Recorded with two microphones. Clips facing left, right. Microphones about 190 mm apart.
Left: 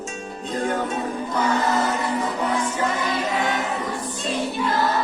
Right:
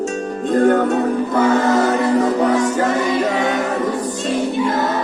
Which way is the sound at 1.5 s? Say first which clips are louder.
Right 7 dB; 45° right (ahead or behind).